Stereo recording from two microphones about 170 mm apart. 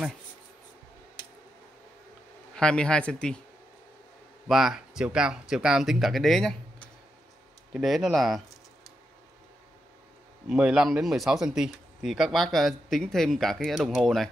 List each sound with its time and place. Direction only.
2.5 s a man's voice: 5° left (ahead or behind)
4.5 s a man's voice: centre (ahead or behind)
10.5 s a man's voice: 5° right (ahead or behind)